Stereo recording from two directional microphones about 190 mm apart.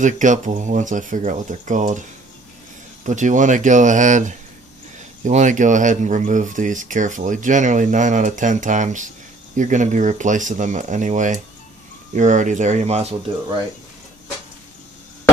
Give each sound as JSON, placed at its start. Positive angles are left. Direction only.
{"t": 0.0, "sound": "speech", "side_deg": -40}
{"t": 3.0, "sound": "speech", "side_deg": -40}